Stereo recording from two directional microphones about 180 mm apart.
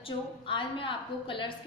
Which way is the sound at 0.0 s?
30° left (ahead or behind).